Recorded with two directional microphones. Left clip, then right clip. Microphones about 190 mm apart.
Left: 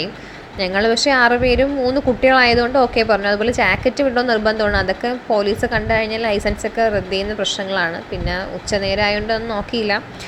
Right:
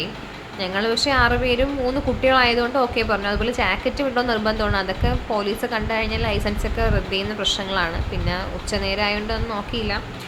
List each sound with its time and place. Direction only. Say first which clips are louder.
0.6 s a woman's voice: left 5 dB; 30° left (ahead or behind)